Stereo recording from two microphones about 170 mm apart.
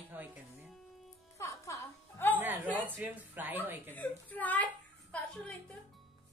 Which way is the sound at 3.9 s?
10° left (ahead or behind).